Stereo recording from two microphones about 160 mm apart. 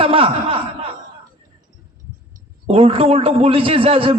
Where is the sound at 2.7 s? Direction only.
35° right (ahead or behind).